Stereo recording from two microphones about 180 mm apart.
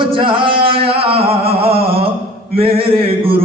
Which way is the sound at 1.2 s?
35° right (ahead or behind).